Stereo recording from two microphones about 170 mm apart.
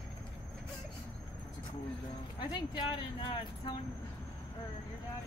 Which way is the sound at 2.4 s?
25° left (ahead or behind).